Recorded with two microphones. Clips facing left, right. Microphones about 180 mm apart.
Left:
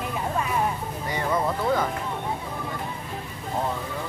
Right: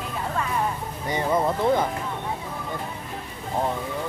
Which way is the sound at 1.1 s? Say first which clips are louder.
Right 3 dB; 20° right (ahead or behind).